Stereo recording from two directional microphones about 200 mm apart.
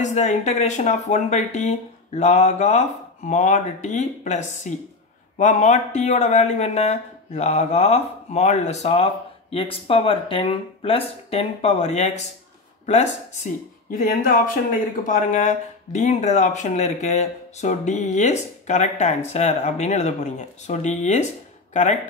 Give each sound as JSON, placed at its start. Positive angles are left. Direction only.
{"t": 0.0, "sound": "speech", "side_deg": 35}